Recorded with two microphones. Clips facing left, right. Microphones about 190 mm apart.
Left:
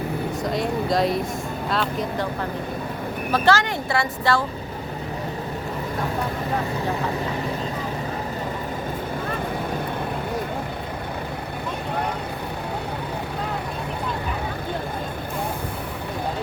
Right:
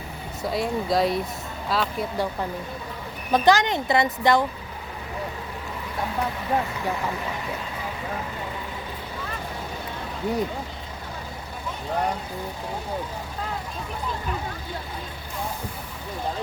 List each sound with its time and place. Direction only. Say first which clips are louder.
0.4 s speech: right 1 dB; centre (ahead or behind)
3.3 s speech: right 2 dB; 20° right (ahead or behind)